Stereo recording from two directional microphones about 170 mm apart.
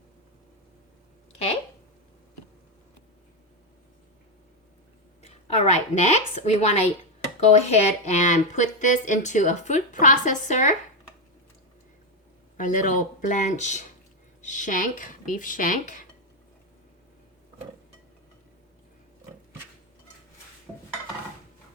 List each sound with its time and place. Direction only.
5.2 s a woman's voice: 40° left (ahead or behind)
12.5 s speech: 50° left (ahead or behind)